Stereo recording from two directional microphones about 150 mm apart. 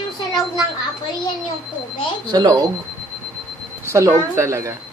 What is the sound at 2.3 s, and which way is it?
Speech, 25° right (ahead or behind).